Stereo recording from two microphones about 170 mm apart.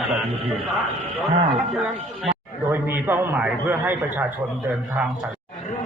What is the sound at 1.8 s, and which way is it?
A man's voice, 10° right (ahead or behind).